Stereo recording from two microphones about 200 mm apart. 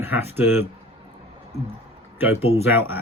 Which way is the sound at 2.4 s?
30° left (ahead or behind).